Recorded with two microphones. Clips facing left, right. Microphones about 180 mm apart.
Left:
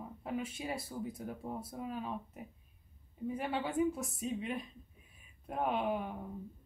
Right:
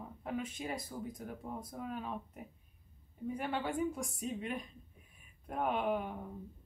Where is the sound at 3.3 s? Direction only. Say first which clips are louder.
Even; 5° left (ahead or behind).